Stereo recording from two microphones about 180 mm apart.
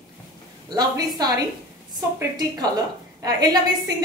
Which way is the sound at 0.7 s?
20° right (ahead or behind).